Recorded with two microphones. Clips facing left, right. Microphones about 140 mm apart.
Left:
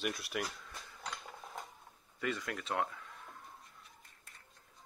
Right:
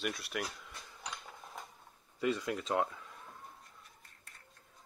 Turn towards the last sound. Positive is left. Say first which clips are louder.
# right 3 dB
turn(degrees=-20)  # may be behind; listen again after turning